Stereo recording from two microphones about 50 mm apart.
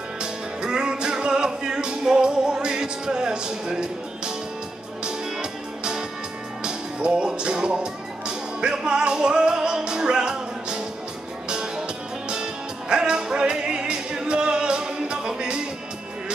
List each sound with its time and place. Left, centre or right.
0.2 s music: centre